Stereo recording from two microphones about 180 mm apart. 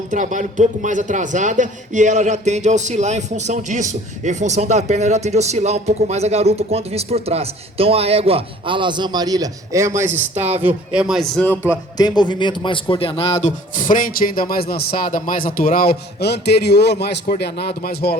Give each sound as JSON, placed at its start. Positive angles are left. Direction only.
{"t": 0.1, "sound": "a man's voice", "side_deg": -45}
{"t": 10.1, "sound": "a man's voice", "side_deg": -40}
{"t": 10.6, "sound": "a man's voice", "side_deg": -5}
{"t": 11.9, "sound": "a man's voice", "side_deg": 25}